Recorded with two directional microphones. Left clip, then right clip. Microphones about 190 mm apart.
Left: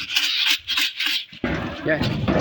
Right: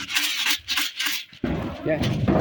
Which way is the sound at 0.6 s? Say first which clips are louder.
Left 3 dB; 30° right (ahead or behind).